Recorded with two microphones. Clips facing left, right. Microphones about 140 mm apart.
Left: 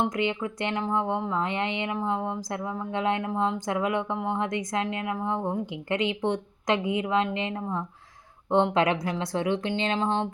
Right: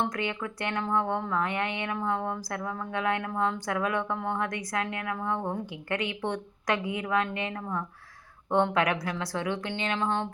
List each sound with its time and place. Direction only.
0.0 s speech: 15° left (ahead or behind)